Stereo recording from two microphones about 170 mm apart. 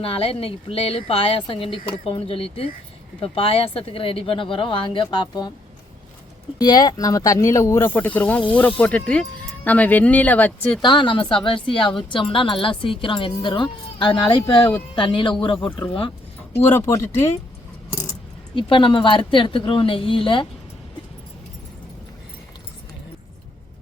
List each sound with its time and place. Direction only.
0.0 s speech: 35° left (ahead or behind)
6.6 s speech: 25° left (ahead or behind); by 10.8 s 10° left (ahead or behind)
10.8 s speech: 25° left (ahead or behind)
16.6 s speech: 15° left (ahead or behind)
18.5 s speech: 30° left (ahead or behind)